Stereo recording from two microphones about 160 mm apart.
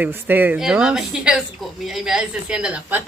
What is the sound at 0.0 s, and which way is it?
Speech, 10° right (ahead or behind).